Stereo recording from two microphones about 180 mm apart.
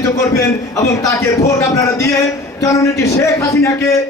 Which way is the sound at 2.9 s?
15° left (ahead or behind).